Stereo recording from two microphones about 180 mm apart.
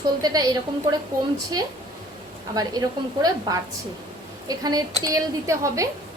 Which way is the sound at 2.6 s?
20° right (ahead or behind).